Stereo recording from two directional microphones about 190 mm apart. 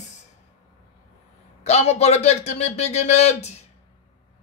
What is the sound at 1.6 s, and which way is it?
Speech, 35° left (ahead or behind).